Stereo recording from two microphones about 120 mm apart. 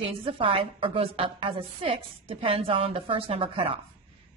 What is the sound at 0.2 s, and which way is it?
A woman's voice, 50° right (ahead or behind).